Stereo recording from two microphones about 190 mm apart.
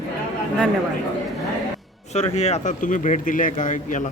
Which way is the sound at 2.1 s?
35° left (ahead or behind).